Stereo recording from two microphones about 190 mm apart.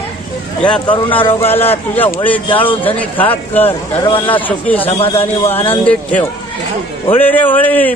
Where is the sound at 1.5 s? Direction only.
10° left (ahead or behind).